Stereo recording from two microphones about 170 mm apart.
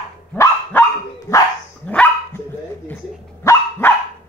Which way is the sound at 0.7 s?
10° left (ahead or behind).